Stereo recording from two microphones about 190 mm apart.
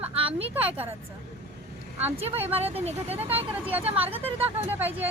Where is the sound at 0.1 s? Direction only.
30° right (ahead or behind).